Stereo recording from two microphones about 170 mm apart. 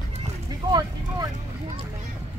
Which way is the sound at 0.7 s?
25° right (ahead or behind).